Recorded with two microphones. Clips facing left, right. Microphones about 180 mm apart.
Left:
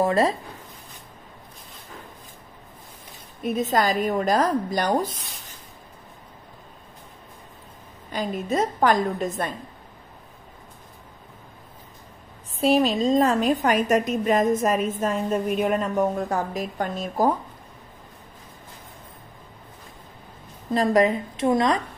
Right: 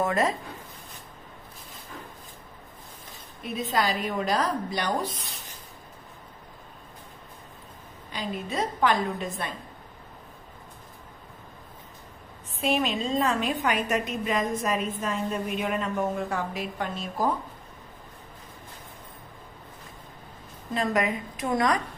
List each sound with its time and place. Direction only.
0.0 s speech: 30° left (ahead or behind)
3.4 s speech: 45° left (ahead or behind)
8.1 s speech: 45° left (ahead or behind)
12.5 s a woman's voice: 35° left (ahead or behind)
20.7 s a woman's voice: 35° left (ahead or behind)
21.5 s a woman's voice: 25° left (ahead or behind)